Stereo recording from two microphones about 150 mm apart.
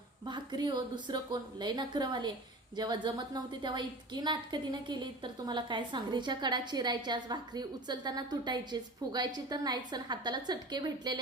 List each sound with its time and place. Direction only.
0.3 s a woman's voice: 30° right (ahead or behind)